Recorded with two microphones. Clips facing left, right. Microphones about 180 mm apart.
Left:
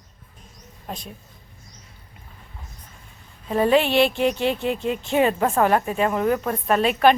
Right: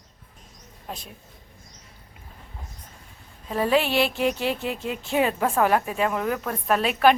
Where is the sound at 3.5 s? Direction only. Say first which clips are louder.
Left 4 dB; centre (ahead or behind).